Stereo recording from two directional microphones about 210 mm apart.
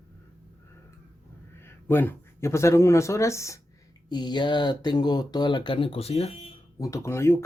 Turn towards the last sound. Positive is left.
turn(degrees=10)  # may be behind; listen again after turning